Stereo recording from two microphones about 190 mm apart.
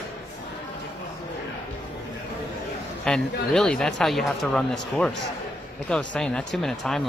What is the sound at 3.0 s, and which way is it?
Speech, 5° left (ahead or behind).